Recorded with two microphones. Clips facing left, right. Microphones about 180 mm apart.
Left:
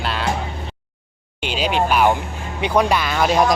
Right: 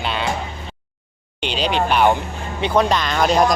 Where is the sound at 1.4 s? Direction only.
5° left (ahead or behind).